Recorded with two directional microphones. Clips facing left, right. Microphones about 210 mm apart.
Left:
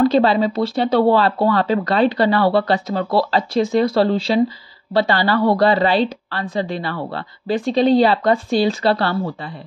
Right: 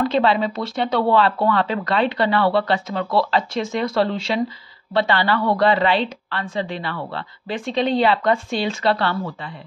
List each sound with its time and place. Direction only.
0.0 s a woman's voice: 35° left (ahead or behind)